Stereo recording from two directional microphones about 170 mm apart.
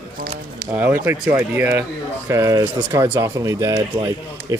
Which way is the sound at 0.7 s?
10° right (ahead or behind).